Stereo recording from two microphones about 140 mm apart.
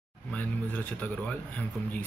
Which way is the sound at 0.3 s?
10° left (ahead or behind).